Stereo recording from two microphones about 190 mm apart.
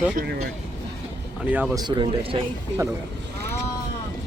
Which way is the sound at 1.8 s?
25° right (ahead or behind).